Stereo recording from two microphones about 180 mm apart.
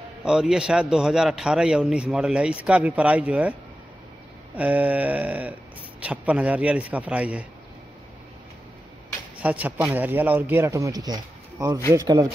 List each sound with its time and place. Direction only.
0.2 s a man's voice: 5° right (ahead or behind)
4.6 s speech: 10° right (ahead or behind)
9.4 s speech: 10° right (ahead or behind)